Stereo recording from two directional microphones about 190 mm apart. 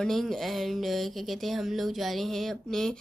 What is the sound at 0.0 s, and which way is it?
Speech, centre (ahead or behind).